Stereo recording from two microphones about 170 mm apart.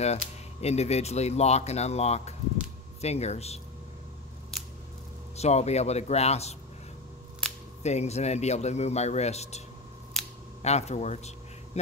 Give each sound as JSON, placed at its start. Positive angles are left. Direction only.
{"t": 0.0, "sound": "speech", "side_deg": 40}
{"t": 5.3, "sound": "speech", "side_deg": 40}
{"t": 7.8, "sound": "speech", "side_deg": 40}
{"t": 10.1, "sound": "camera", "side_deg": 0}
{"t": 10.6, "sound": "a man's voice", "side_deg": 40}